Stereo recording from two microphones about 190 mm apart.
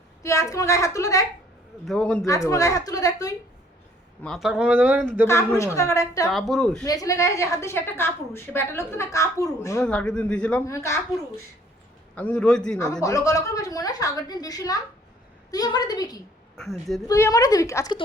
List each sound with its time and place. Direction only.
0.2 s a woman's voice: 15° left (ahead or behind)
1.8 s speech: centre (ahead or behind)
2.2 s a woman's voice: 15° left (ahead or behind)
4.2 s speech: centre (ahead or behind)
5.2 s a woman's voice: 15° left (ahead or behind)
6.2 s speech: centre (ahead or behind)
6.8 s a woman's voice: 20° left (ahead or behind)
9.8 s a woman's voice: 5° left (ahead or behind)
13.0 s a woman's voice: 15° left (ahead or behind)
16.6 s speech: centre (ahead or behind)
17.1 s a woman's voice: 15° left (ahead or behind)